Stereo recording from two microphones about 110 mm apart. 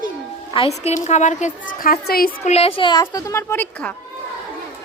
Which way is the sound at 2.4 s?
70° left (ahead or behind).